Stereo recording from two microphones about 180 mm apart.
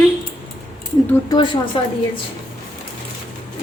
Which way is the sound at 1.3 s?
25° left (ahead or behind).